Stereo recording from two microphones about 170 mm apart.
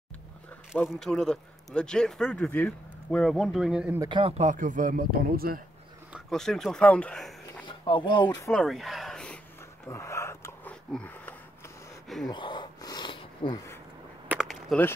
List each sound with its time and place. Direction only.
0.7 s speech: centre (ahead or behind)
4.0 s speech: 30° right (ahead or behind); by 5.6 s 60° right (ahead or behind)
6.1 s speech: 5° left (ahead or behind)
7.6 s speech: 25° left (ahead or behind)
8.4 s speech: 5° left (ahead or behind)
9.8 s dog: 15° left (ahead or behind)
12.3 s a sound: 25° left (ahead or behind)
14.3 s a sound: centre (ahead or behind)